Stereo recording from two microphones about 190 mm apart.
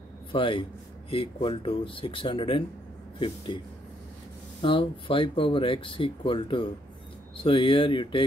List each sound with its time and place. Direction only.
0.3 s speech: 25° left (ahead or behind)